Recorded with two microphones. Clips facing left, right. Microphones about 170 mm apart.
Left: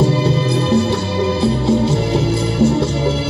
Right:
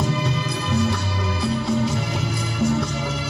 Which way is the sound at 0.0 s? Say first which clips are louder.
Left 9 dB; 30° left (ahead or behind).